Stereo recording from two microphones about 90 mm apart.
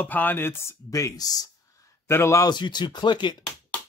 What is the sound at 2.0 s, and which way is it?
Speech, 30° left (ahead or behind).